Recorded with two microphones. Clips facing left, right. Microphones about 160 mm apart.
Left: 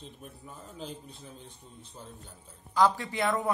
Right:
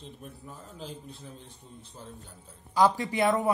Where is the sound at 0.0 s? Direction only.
Centre (ahead or behind).